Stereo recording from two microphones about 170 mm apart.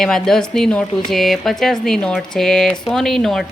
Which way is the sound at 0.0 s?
5° left (ahead or behind).